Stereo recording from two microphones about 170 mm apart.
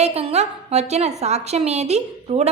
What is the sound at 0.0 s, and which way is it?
A woman's voice, 35° right (ahead or behind).